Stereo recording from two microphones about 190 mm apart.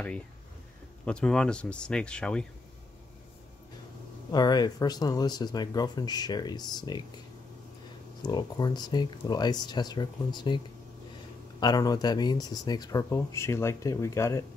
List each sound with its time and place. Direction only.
1.0 s speech: 5° left (ahead or behind)
4.3 s speech: 20° left (ahead or behind)
8.2 s speech: 20° left (ahead or behind)
11.6 s speech: 20° left (ahead or behind)